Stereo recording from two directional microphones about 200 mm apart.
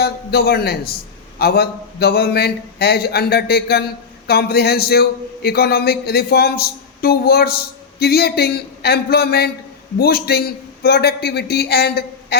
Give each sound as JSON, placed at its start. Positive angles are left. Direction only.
{"t": 0.0, "sound": "a man's voice", "side_deg": 55}